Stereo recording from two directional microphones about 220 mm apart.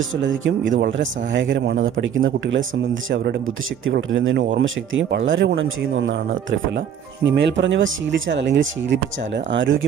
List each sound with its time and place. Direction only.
0.2 s speech: 55° right (ahead or behind)
7.2 s speech: 55° right (ahead or behind)